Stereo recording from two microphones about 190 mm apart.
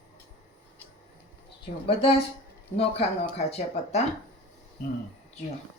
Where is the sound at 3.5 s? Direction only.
35° left (ahead or behind).